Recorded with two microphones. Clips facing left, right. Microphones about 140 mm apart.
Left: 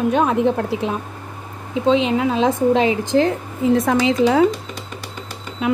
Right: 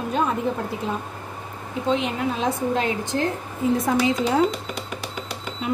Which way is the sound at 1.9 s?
90° left.